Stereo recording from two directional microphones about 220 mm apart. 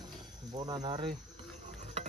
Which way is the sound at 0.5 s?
20° right (ahead or behind).